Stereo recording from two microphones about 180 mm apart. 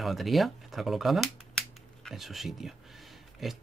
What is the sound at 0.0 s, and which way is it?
Speech, centre (ahead or behind).